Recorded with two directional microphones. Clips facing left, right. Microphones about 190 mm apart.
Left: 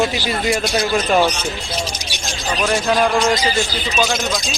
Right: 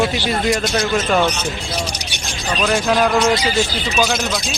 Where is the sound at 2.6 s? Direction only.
Centre (ahead or behind).